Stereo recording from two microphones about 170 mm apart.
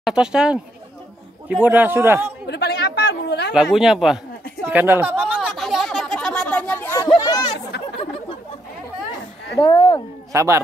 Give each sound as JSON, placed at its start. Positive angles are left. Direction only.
{"t": 0.0, "sound": "a man's voice", "side_deg": -5}
{"t": 2.4, "sound": "chatter", "side_deg": 80}
{"t": 3.7, "sound": "a sound", "side_deg": 0}
{"t": 7.2, "sound": "chatter", "side_deg": 20}
{"t": 9.6, "sound": "speech", "side_deg": 30}
{"t": 10.3, "sound": "a man's voice", "side_deg": -15}